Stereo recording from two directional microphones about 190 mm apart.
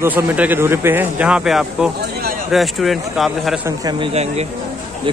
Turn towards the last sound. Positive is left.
turn(degrees=-35)  # may be behind; listen again after turning